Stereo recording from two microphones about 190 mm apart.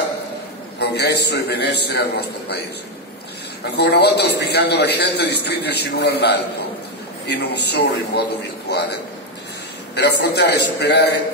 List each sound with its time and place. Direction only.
0.7 s a man's voice: 60° left (ahead or behind)
3.7 s a man's voice: 60° left (ahead or behind)
9.9 s a man's voice: 60° left (ahead or behind)